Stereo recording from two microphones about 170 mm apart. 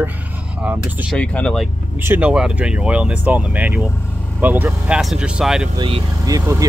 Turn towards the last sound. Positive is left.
turn(degrees=-15)  # may be behind; listen again after turning